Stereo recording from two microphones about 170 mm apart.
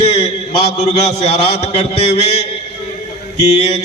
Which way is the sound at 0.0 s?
35° left (ahead or behind).